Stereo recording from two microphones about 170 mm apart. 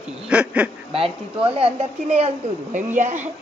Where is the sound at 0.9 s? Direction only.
30° right (ahead or behind).